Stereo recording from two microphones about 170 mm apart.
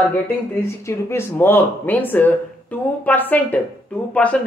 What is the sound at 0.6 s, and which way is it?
A woman's voice, 15° left (ahead or behind).